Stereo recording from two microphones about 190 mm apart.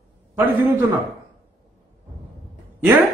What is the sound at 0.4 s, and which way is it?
Speech, 10° right (ahead or behind).